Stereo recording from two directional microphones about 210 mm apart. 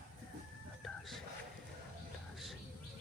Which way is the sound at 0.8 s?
Centre (ahead or behind).